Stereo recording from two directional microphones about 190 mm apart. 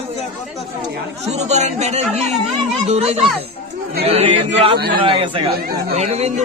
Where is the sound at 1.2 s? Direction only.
35° right (ahead or behind).